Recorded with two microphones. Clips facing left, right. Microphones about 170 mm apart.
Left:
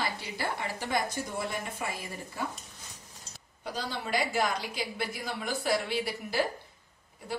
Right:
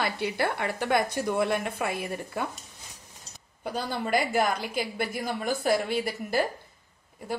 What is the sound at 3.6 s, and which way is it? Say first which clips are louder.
A woman's voice: right 5 dB; 55° right (ahead or behind).